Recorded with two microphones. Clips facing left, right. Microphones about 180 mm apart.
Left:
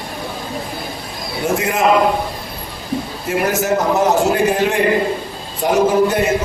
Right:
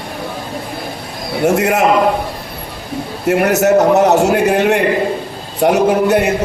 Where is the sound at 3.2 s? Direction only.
70° right (ahead or behind).